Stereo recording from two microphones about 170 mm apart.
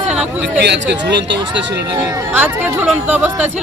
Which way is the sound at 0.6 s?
90° right.